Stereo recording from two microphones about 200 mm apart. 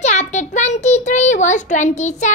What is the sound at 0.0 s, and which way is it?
A child's voice, 35° left (ahead or behind).